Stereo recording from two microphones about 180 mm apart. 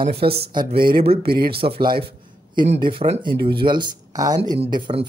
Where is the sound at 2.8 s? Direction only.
35° right (ahead or behind).